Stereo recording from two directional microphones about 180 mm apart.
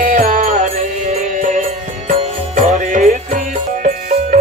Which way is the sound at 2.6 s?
45° right (ahead or behind).